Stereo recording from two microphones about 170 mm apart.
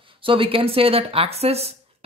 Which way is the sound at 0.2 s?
30° right (ahead or behind).